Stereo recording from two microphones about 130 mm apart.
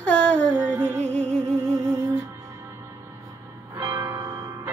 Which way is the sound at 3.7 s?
20° right (ahead or behind).